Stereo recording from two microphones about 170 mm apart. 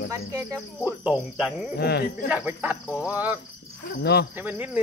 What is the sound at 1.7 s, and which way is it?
Speech, 70° left (ahead or behind).